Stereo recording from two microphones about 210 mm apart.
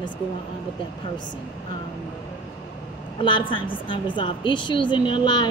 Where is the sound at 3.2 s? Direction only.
20° left (ahead or behind).